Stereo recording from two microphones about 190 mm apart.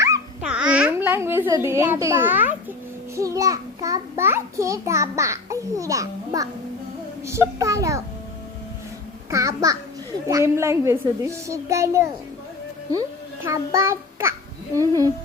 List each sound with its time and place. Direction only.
0.4 s a child's voice: 5° right (ahead or behind)
9.3 s a child's voice: 15° right (ahead or behind)